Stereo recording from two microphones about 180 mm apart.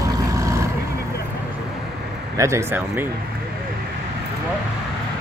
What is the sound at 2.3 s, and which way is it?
Speech, 15° right (ahead or behind).